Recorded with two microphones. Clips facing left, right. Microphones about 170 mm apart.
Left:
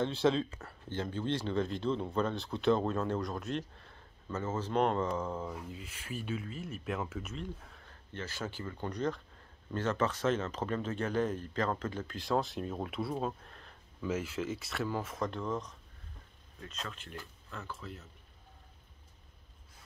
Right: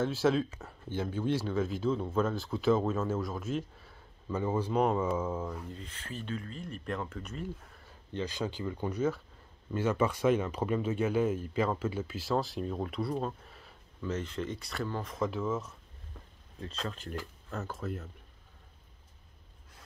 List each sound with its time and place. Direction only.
0.0 s speech: 5° right (ahead or behind)
5.5 s speech: 10° left (ahead or behind)
8.1 s speech: 15° right (ahead or behind)
16.6 s speech: 35° right (ahead or behind)